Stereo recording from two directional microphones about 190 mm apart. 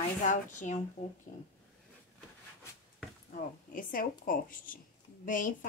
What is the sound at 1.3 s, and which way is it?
Speech, 25° left (ahead or behind).